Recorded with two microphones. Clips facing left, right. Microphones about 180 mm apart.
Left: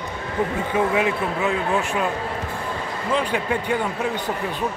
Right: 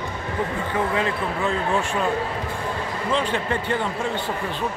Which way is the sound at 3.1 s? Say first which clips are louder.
Left 2 dB; 10° left (ahead or behind).